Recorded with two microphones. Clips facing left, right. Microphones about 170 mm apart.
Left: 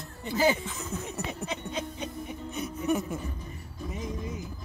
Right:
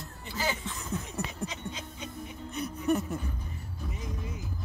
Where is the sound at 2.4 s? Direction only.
5° left (ahead or behind).